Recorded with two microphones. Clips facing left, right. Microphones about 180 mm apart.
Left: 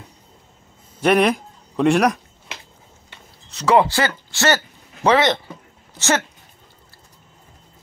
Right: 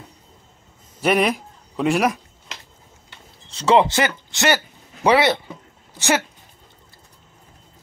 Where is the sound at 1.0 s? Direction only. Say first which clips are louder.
Left 3 dB; centre (ahead or behind).